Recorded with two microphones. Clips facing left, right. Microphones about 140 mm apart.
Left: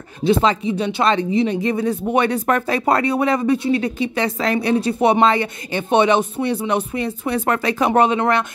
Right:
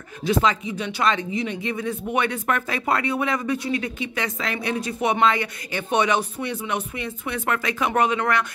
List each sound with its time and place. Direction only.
0.2 s speech: 30° left (ahead or behind)